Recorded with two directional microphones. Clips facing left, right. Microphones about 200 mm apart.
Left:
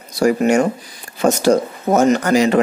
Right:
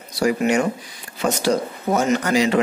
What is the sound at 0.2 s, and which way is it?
Speech, 45° left (ahead or behind).